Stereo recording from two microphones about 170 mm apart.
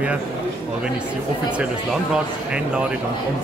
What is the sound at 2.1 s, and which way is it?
Speech, 5° right (ahead or behind).